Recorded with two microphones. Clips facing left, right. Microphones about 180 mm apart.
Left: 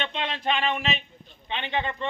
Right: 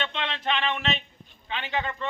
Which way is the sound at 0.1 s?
10° left (ahead or behind).